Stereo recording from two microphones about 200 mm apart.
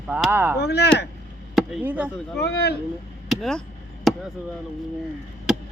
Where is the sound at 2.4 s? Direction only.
55° left (ahead or behind).